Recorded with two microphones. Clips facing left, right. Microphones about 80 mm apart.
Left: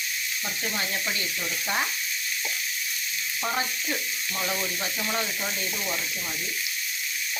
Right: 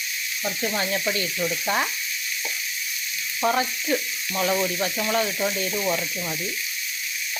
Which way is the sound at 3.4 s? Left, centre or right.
Right.